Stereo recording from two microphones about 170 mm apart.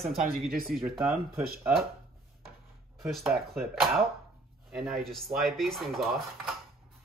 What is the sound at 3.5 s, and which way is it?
Speech, centre (ahead or behind).